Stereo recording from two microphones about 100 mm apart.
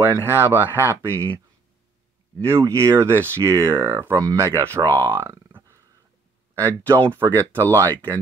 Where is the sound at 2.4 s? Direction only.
30° right (ahead or behind).